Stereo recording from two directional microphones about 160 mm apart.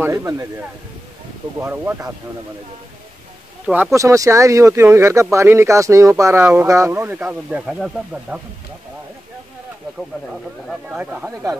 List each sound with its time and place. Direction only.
0.0 s speech: 20° right (ahead or behind)
1.6 s speech: 15° right (ahead or behind)
3.6 s speech: 10° right (ahead or behind)
3.9 s speech: 20° right (ahead or behind)
10.3 s speech: 5° right (ahead or behind)